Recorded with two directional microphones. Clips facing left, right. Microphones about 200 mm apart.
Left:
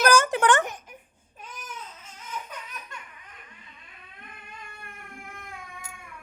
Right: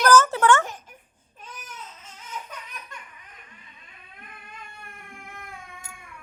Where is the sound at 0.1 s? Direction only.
15° left (ahead or behind).